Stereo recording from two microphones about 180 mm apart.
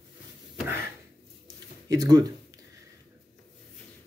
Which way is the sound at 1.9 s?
20° right (ahead or behind).